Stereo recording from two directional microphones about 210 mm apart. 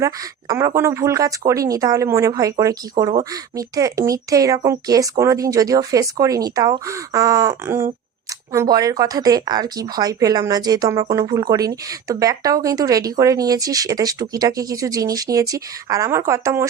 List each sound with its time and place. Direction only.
0.0 s speech: 15° right (ahead or behind)